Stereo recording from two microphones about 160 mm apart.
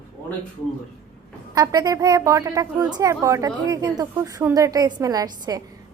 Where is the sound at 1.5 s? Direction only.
25° right (ahead or behind).